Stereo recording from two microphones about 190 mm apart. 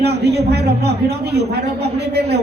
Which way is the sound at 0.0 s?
60° right (ahead or behind).